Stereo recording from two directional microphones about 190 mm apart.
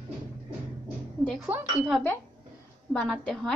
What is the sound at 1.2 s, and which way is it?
A woman's voice, 5° left (ahead or behind).